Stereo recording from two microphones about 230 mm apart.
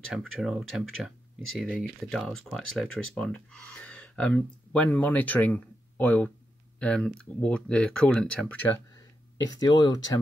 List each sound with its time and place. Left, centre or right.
0.1 s speech: centre